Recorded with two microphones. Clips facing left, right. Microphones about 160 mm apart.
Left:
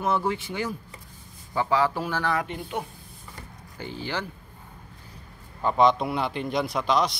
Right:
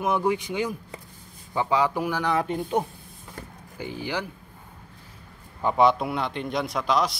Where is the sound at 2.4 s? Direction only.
40° right (ahead or behind).